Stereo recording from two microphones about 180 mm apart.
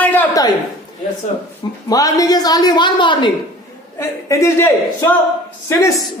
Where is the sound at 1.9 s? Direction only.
20° left (ahead or behind).